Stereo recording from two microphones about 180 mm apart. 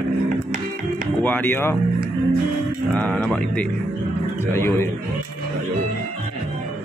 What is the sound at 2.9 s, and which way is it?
Speech, 5° left (ahead or behind).